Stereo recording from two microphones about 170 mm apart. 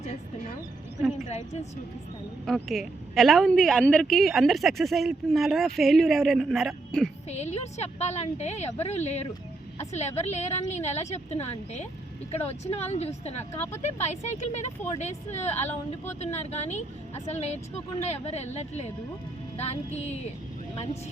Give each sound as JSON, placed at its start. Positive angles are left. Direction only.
{"t": 2.5, "sound": "a woman's voice", "side_deg": 0}
{"t": 7.3, "sound": "a woman's voice", "side_deg": 40}